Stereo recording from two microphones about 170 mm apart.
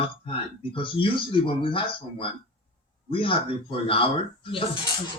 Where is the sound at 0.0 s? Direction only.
30° left (ahead or behind).